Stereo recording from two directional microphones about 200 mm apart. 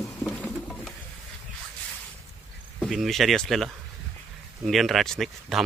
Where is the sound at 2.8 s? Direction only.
Centre (ahead or behind).